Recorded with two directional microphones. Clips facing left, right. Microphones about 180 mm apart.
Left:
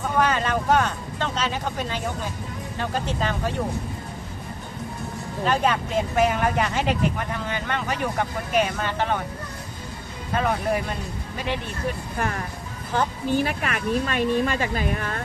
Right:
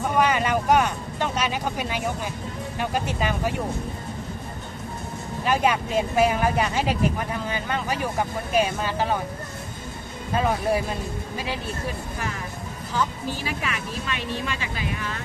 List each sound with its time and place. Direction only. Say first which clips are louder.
0.0 s speech: right 1 dB; 10° right (ahead or behind)
5.4 s speech: even; 10° right (ahead or behind)
12.2 s speech: left 4 dB; 55° left (ahead or behind)